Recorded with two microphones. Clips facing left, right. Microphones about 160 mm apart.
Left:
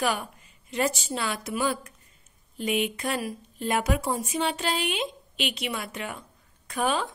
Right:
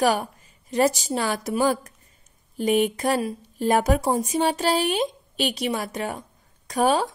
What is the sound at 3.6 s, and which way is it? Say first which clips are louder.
A woman's voice: right 6 dB; 40° right (ahead or behind).